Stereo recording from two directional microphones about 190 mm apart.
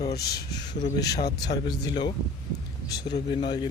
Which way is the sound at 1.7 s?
20° left (ahead or behind).